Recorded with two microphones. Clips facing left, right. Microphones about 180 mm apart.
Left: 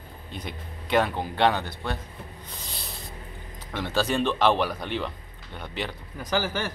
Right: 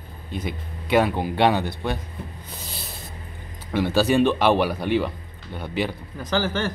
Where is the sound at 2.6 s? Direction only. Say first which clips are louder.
Right 3 dB; 5° right (ahead or behind).